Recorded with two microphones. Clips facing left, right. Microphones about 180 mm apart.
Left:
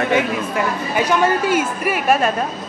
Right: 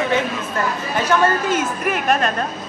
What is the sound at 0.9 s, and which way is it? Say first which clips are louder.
A woman's voice: left 1 dB; 10° left (ahead or behind).